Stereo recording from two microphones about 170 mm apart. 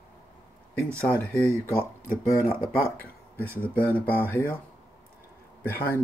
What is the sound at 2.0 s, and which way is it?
Speech, 55° left (ahead or behind).